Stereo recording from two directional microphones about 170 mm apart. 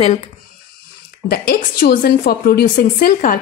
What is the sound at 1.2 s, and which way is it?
Speech, 60° left (ahead or behind).